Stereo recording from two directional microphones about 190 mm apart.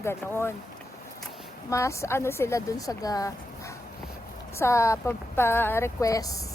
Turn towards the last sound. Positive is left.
turn(degrees=20)  # may be behind; listen again after turning